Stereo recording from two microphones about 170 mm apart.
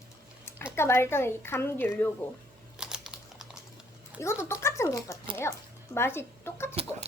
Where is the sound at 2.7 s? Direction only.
5° right (ahead or behind).